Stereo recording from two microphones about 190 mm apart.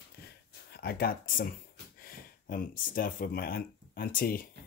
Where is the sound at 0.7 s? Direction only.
55° left (ahead or behind).